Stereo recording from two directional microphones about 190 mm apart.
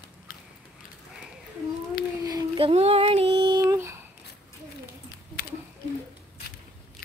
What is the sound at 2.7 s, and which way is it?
Female singing, 30° right (ahead or behind).